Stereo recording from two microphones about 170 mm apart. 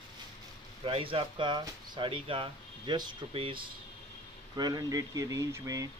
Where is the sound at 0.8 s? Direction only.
30° right (ahead or behind).